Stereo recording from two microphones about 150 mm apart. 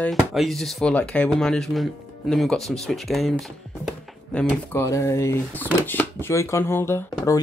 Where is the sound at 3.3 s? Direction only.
5° left (ahead or behind).